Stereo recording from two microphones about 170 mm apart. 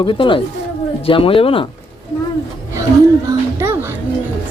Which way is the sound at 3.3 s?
15° right (ahead or behind).